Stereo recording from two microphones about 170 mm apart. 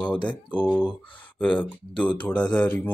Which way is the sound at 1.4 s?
10° left (ahead or behind).